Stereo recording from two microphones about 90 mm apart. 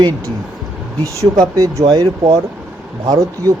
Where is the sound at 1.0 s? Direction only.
40° right (ahead or behind).